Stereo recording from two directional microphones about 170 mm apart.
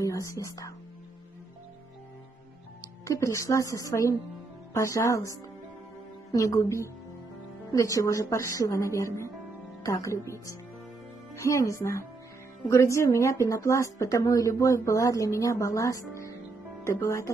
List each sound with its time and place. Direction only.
0.0 s speech: 20° left (ahead or behind)
3.1 s speech: 20° left (ahead or behind)